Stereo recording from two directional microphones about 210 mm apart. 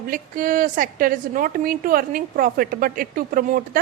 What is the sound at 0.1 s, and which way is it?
A woman's voice, 40° right (ahead or behind).